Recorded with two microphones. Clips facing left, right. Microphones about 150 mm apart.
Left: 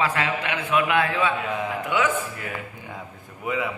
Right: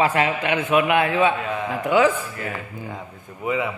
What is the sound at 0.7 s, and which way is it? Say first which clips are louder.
Speech: right 3 dB; 20° right (ahead or behind).